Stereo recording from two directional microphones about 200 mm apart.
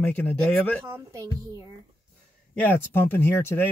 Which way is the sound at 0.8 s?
15° right (ahead or behind).